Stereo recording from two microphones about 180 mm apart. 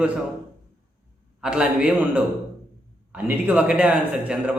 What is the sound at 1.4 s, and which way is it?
A man's voice, 5° right (ahead or behind).